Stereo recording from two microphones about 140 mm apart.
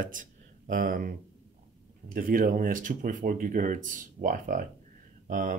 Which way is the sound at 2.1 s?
90° right.